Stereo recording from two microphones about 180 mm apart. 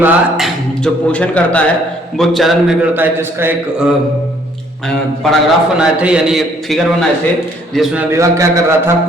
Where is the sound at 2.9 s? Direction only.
10° right (ahead or behind).